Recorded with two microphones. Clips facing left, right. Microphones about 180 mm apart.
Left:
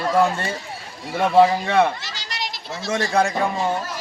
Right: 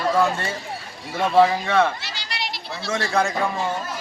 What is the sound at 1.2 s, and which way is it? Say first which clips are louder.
Speech: left 2 dB; 15° left (ahead or behind).